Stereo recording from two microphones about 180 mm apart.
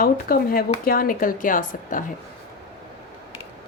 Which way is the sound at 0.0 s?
55° left (ahead or behind).